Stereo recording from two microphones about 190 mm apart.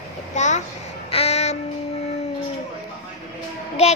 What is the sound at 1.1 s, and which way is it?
Child singing, 35° left (ahead or behind).